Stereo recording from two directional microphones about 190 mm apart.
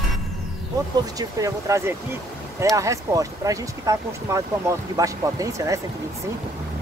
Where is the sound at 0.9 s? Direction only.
20° right (ahead or behind).